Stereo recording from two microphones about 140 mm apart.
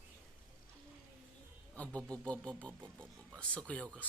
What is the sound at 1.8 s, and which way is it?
Speech, 10° left (ahead or behind).